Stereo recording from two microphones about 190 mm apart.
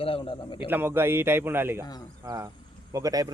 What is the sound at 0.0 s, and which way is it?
Speech, 30° left (ahead or behind).